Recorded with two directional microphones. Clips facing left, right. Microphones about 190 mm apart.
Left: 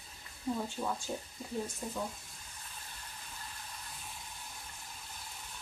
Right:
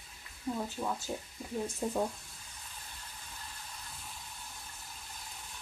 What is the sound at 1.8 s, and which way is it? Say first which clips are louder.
Speech: right 7 dB; 45° right (ahead or behind).